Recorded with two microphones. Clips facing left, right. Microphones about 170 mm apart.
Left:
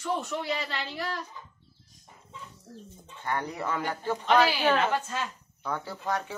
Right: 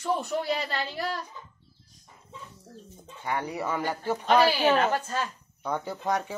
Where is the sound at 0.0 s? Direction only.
35° right (ahead or behind).